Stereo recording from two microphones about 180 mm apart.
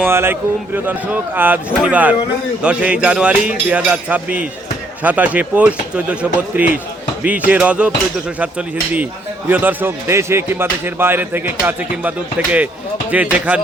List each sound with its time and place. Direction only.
0.0 s speech: 15° right (ahead or behind)
9.5 s speech: 10° right (ahead or behind)